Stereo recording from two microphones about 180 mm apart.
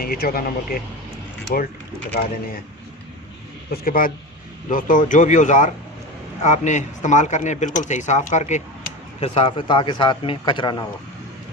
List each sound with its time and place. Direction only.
0.0 s speech: 55° left (ahead or behind)
3.7 s speech: 50° left (ahead or behind); by 10.8 s 25° left (ahead or behind)